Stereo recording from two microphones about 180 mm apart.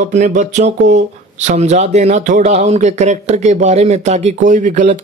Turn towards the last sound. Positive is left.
turn(degrees=-45)  # may be behind; listen again after turning